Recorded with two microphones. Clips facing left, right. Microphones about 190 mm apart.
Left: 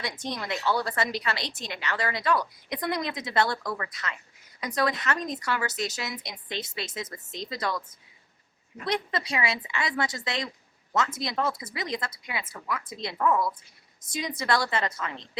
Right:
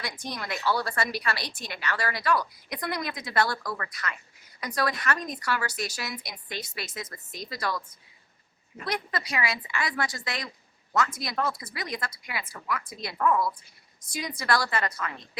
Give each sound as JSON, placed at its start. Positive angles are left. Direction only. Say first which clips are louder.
{"t": 0.0, "sound": "a woman's voice", "louder": "left 2 dB", "side_deg": 20}
{"t": 8.8, "sound": "a woman's voice", "louder": "left 3 dB", "side_deg": 25}